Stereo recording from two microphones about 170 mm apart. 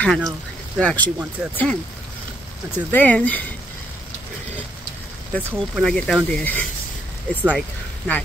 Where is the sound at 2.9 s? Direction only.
10° left (ahead or behind).